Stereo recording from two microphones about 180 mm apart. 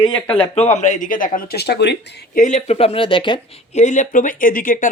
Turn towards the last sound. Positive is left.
turn(degrees=50)  # may be behind; listen again after turning